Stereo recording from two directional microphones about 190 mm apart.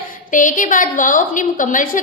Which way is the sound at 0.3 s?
45° left (ahead or behind).